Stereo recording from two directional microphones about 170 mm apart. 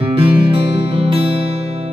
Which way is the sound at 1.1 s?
35° right (ahead or behind).